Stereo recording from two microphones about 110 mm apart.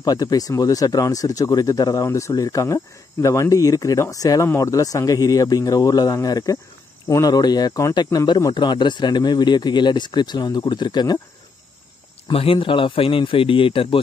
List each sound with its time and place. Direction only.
0.0 s speech: 35° left (ahead or behind)
12.3 s speech: 55° left (ahead or behind)